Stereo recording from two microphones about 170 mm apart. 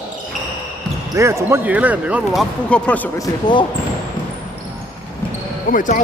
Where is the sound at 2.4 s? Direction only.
5° left (ahead or behind).